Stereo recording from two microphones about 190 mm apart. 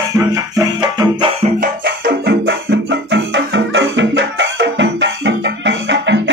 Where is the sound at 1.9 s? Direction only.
65° right (ahead or behind).